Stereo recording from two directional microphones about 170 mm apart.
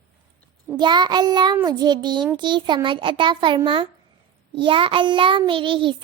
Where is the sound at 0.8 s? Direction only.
25° right (ahead or behind).